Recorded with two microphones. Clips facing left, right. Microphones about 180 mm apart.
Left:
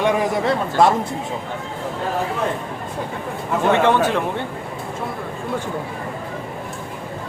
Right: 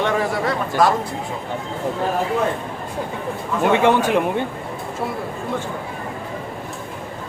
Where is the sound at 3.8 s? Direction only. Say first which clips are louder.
Right 1 dB; 15° right (ahead or behind).